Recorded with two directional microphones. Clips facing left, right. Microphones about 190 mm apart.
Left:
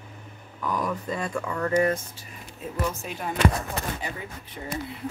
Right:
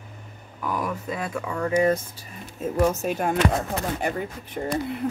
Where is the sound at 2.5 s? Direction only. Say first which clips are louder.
Right 8 dB; 45° right (ahead or behind).